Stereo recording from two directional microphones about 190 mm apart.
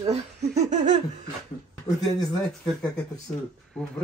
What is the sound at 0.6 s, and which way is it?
Laughter, 40° right (ahead or behind).